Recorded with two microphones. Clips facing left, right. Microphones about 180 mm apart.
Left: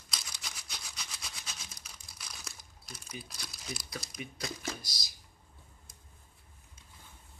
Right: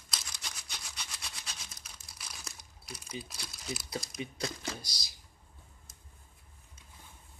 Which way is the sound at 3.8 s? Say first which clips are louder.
Right 4 dB; 30° right (ahead or behind).